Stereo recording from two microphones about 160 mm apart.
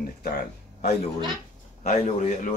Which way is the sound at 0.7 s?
45° left (ahead or behind).